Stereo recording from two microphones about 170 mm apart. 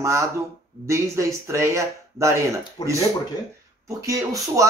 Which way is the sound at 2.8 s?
25° left (ahead or behind).